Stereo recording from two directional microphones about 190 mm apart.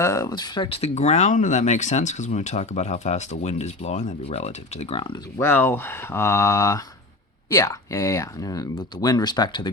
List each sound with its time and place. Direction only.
0.0 s speech: 15° left (ahead or behind)
5.4 s speech: 10° left (ahead or behind)